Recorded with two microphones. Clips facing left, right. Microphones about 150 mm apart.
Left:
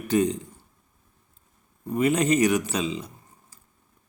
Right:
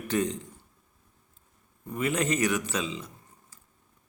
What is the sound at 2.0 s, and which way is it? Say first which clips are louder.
Speech: left 6 dB; 15° left (ahead or behind).